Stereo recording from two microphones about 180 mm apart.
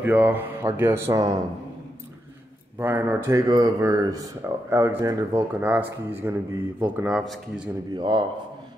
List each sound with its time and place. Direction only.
0.0 s speech: 10° right (ahead or behind)
2.8 s speech: 10° right (ahead or behind)
7.9 s a man's voice: 25° right (ahead or behind)